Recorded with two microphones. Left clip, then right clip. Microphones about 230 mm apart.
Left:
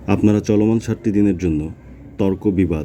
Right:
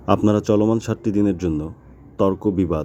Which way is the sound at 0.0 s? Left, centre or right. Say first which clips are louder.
Even; centre.